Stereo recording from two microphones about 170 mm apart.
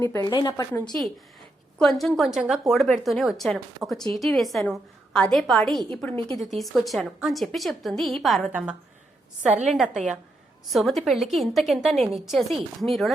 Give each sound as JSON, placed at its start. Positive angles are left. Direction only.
{"t": 0.1, "sound": "a woman's voice", "side_deg": 20}
{"t": 1.8, "sound": "a woman's voice", "side_deg": 5}